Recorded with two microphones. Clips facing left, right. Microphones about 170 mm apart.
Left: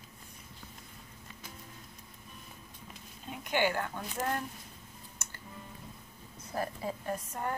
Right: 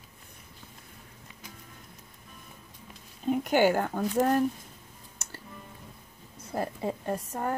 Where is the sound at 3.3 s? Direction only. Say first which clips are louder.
Right 8 dB; 45° right (ahead or behind).